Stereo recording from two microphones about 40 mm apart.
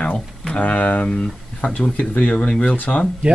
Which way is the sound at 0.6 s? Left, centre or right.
Left.